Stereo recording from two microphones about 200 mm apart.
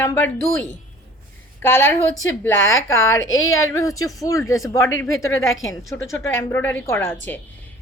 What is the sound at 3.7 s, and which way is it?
Speech, 15° left (ahead or behind).